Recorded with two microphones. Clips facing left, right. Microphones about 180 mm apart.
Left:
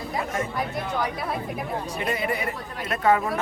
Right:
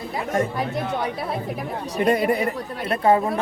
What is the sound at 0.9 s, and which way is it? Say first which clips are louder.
Speech: right 2 dB; 25° right (ahead or behind).